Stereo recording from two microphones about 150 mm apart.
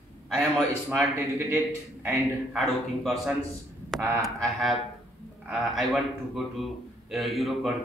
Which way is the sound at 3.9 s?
5° left (ahead or behind).